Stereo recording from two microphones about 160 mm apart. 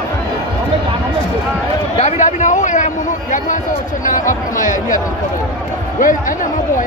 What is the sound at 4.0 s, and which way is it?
Speech, 55° left (ahead or behind).